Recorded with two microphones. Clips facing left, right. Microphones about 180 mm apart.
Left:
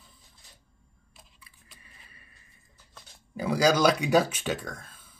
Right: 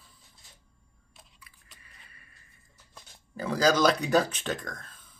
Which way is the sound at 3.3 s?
10° left (ahead or behind).